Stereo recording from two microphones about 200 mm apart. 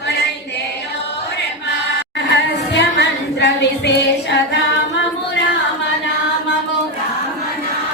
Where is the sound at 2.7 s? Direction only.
60° left (ahead or behind).